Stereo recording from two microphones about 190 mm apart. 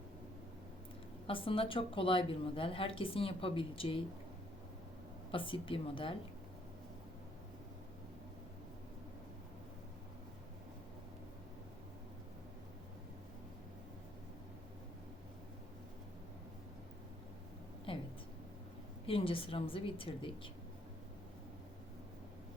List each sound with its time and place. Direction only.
1.3 s speech: 30° left (ahead or behind)
5.3 s speech: 25° left (ahead or behind)
17.9 s a sound: 30° left (ahead or behind)
19.0 s speech: 30° left (ahead or behind)